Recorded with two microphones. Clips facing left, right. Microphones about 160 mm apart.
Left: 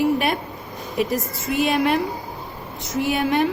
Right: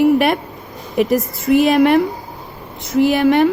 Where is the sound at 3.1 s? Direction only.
65° right (ahead or behind).